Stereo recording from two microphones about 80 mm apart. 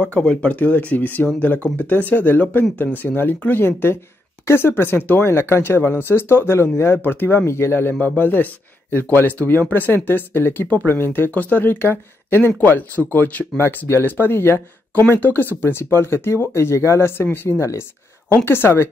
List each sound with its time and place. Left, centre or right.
0.0 s speech: centre; by 18.9 s left